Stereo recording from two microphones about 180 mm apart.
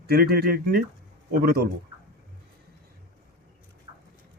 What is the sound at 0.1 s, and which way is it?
A man's voice, 60° right (ahead or behind).